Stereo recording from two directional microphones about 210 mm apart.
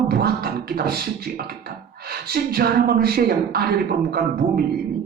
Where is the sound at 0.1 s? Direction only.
50° right (ahead or behind).